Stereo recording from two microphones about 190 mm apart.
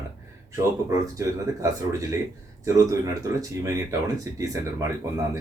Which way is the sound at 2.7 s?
15° right (ahead or behind).